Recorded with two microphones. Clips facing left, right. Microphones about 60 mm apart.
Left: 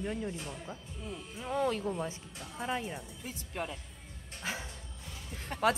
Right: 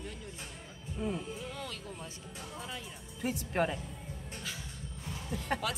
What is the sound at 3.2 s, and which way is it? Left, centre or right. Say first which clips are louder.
Speech: right 10 dB; right.